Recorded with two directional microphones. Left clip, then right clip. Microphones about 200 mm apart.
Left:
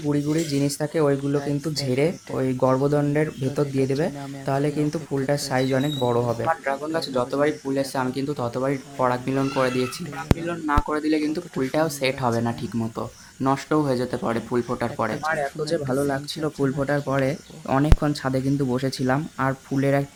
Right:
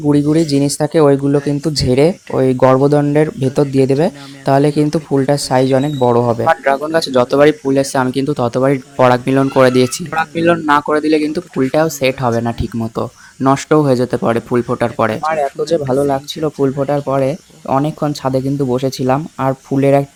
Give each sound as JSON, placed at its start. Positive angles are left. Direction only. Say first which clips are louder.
{"t": 0.0, "sound": "speech", "louder": "right 11 dB", "side_deg": -30}
{"t": 6.5, "sound": "speech", "louder": "right 11 dB", "side_deg": -40}